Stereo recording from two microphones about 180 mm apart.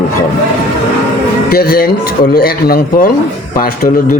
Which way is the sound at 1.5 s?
55° left (ahead or behind).